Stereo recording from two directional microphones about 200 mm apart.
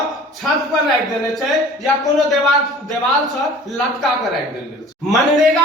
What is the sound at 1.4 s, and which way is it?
A man's voice, centre (ahead or behind).